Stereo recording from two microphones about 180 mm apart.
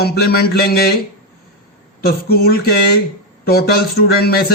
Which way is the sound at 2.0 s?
60° left (ahead or behind).